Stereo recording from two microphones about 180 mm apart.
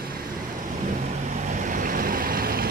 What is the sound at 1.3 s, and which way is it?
Vehicle, 45° right (ahead or behind).